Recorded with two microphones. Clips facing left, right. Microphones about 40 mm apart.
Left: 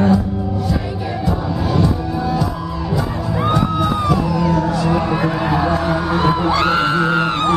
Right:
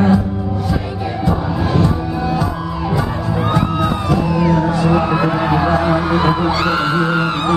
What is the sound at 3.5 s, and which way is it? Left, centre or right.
Music, centre.